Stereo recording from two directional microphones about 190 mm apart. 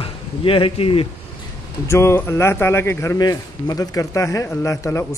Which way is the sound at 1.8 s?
15° left (ahead or behind).